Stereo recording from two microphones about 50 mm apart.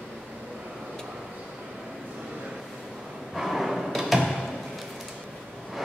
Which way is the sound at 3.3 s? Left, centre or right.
Centre.